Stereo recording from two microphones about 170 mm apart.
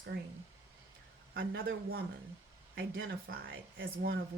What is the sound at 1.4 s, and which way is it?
Speech, 60° right (ahead or behind).